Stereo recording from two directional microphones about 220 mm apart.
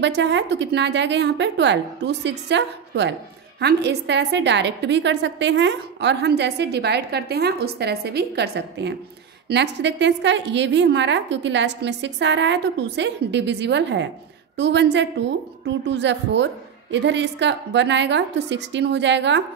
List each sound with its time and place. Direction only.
0.0 s a woman's voice: 55° right (ahead or behind)